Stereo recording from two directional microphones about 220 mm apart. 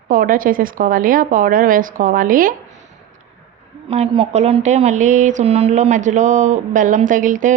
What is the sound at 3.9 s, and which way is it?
A woman's voice, 25° right (ahead or behind).